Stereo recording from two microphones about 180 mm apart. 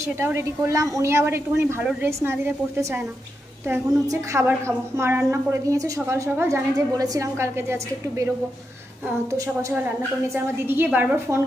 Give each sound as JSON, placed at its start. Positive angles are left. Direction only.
{"t": 0.0, "sound": "a woman's voice", "side_deg": -15}
{"t": 9.3, "sound": "a woman's voice", "side_deg": -15}